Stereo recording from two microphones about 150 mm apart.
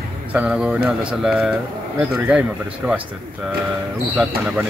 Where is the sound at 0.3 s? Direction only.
5° right (ahead or behind).